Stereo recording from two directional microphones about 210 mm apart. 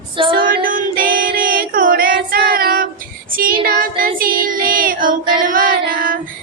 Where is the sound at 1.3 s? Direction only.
40° right (ahead or behind).